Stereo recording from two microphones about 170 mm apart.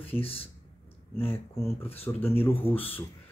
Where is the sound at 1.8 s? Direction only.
35° left (ahead or behind).